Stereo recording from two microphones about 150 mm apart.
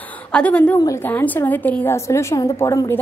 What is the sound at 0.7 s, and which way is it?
A woman's voice, 20° left (ahead or behind).